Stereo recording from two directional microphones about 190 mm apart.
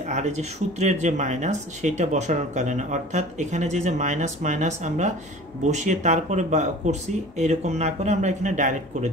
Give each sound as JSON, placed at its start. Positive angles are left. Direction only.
{"t": 0.1, "sound": "speech", "side_deg": -40}